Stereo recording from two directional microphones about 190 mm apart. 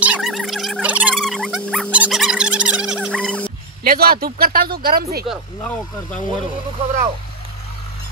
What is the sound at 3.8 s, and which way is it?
Speech, 50° right (ahead or behind).